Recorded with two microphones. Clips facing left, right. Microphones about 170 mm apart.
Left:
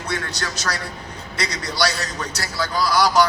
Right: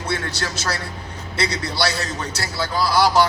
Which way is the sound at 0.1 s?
30° right (ahead or behind).